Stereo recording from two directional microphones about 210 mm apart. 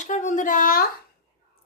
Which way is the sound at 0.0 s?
35° left (ahead or behind).